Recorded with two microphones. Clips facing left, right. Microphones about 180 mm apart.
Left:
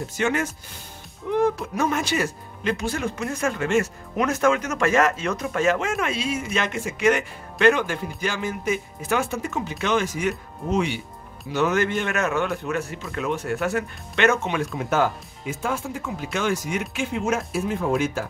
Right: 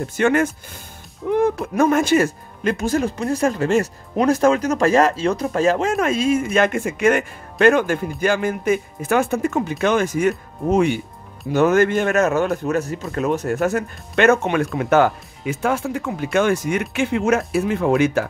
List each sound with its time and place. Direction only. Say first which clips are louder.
0.2 s speech: right 7 dB; 55° right (ahead or behind)
16.9 s speech: right 7 dB; 70° right (ahead or behind)